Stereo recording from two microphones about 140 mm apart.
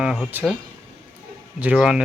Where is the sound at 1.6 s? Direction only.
10° right (ahead or behind).